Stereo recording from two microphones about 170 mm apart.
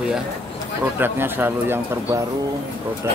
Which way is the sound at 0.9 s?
10° right (ahead or behind).